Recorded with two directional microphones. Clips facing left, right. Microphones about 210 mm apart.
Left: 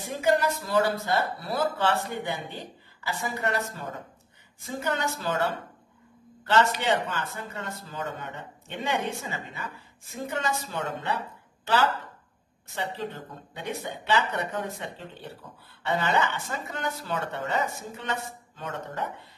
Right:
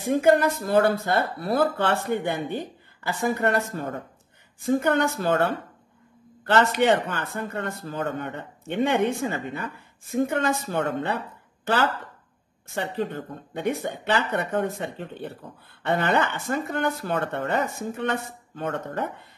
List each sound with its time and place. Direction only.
0.0 s a man's voice: 55° right (ahead or behind)